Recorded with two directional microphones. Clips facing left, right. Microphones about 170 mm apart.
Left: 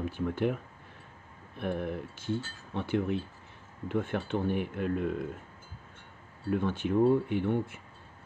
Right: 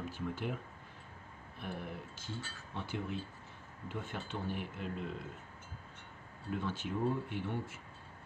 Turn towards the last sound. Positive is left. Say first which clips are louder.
# left 10 dB
turn(degrees=60)  # may be behind; listen again after turning